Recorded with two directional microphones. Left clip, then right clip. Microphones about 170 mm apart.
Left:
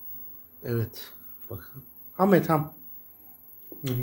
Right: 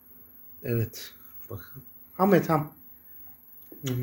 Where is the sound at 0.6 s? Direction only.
20° right (ahead or behind); by 2.6 s centre (ahead or behind).